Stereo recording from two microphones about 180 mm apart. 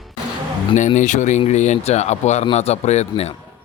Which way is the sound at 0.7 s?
45° left (ahead or behind).